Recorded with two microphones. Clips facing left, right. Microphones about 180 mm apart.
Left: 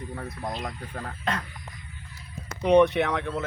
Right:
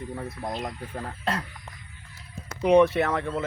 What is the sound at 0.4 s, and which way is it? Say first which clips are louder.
Speech: right 1 dB; centre (ahead or behind).